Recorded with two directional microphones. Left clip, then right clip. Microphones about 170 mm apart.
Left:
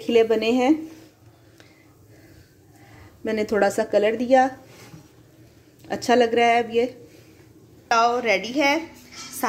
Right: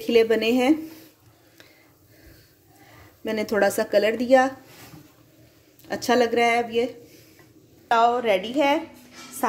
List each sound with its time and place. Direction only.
0.0 s a woman's voice: centre (ahead or behind)
3.3 s a woman's voice: 5° left (ahead or behind)
5.9 s a woman's voice: centre (ahead or behind)